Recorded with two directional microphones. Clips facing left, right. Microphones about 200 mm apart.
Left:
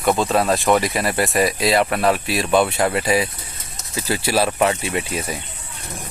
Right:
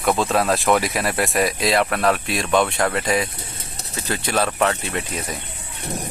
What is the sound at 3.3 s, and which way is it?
Bird, 30° right (ahead or behind).